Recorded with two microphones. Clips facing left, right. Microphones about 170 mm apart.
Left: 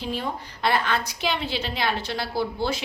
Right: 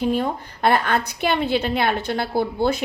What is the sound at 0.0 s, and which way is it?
A woman's voice, 50° right (ahead or behind).